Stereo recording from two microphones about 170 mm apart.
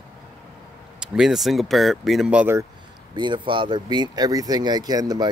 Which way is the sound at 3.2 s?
30° right (ahead or behind).